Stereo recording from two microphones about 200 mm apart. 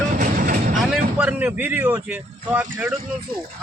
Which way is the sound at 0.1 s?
45° right (ahead or behind).